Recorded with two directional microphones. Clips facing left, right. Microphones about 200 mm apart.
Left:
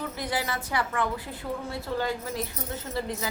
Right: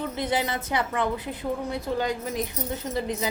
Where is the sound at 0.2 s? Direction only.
20° right (ahead or behind).